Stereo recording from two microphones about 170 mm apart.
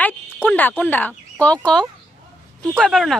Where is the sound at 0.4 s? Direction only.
10° left (ahead or behind).